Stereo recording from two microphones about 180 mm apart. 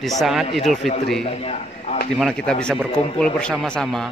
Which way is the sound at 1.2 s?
35° left (ahead or behind).